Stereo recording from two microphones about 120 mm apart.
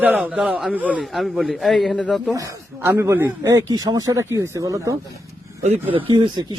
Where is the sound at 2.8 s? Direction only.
20° right (ahead or behind).